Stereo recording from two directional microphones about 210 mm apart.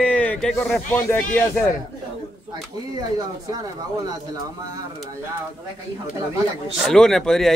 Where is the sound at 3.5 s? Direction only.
15° right (ahead or behind).